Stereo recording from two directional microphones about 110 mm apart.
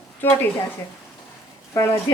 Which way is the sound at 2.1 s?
35° left (ahead or behind).